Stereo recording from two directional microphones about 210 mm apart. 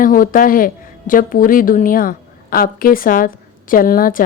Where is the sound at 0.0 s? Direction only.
40° left (ahead or behind).